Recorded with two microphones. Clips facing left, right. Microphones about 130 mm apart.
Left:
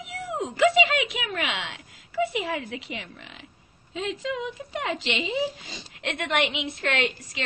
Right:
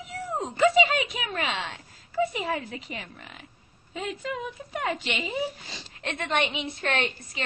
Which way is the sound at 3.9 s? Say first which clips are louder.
Left 3 dB; 90° left.